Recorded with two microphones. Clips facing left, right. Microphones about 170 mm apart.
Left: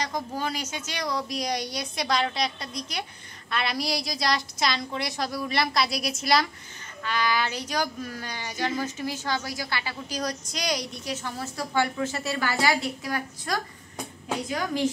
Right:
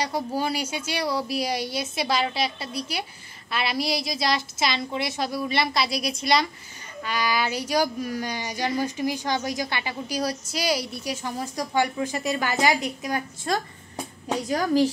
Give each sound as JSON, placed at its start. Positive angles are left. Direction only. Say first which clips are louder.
{"t": 0.4, "sound": "a woman's voice", "louder": "right 4 dB", "side_deg": -10}
{"t": 7.0, "sound": "speech", "louder": "right 1 dB", "side_deg": -10}
{"t": 14.5, "sound": "a woman's voice", "louder": "right 7 dB", "side_deg": -35}